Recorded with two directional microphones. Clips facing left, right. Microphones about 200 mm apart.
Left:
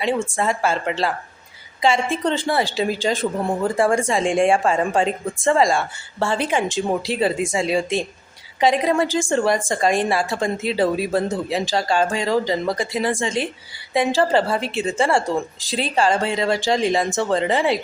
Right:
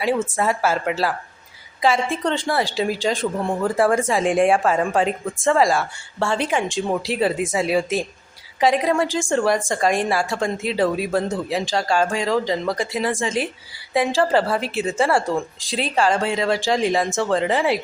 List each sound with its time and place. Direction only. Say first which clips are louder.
0.2 s a woman's voice: even; 5° right (ahead or behind)